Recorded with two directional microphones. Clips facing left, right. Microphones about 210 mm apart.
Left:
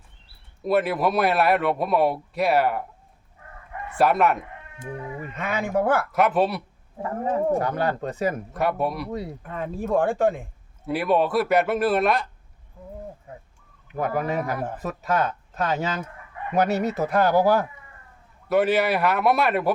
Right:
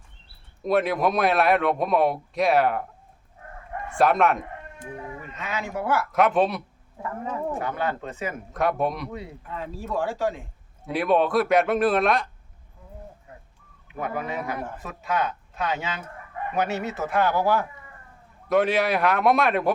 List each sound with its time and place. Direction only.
0.6 s a man's voice: 5° left (ahead or behind)
3.9 s a man's voice: 5° left (ahead or behind)
5.3 s speech: 55° left (ahead or behind)
6.1 s a man's voice: centre (ahead or behind)
7.0 s a man's voice: 35° left (ahead or behind)
8.5 s a man's voice: 5° left (ahead or behind)
9.0 s a man's voice: 40° left (ahead or behind)
9.4 s speech: 55° left (ahead or behind)
10.8 s a man's voice: 5° left (ahead or behind)
13.8 s a man's voice: 40° left (ahead or behind)
18.4 s a man's voice: 5° left (ahead or behind)